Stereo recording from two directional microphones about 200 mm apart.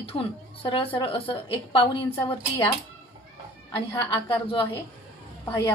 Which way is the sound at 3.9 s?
25° left (ahead or behind).